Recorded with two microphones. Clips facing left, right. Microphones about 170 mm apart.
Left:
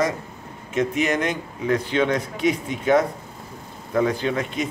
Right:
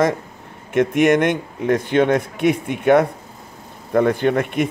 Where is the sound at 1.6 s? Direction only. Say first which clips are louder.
Right 5 dB; 50° right (ahead or behind).